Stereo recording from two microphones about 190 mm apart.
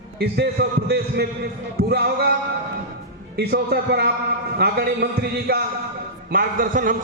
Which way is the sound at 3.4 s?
55° right (ahead or behind).